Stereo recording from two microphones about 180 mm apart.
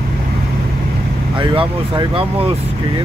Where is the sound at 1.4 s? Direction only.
30° right (ahead or behind).